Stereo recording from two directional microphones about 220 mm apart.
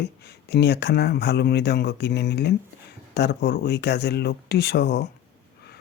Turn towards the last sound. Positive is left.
turn(degrees=50)  # may be behind; listen again after turning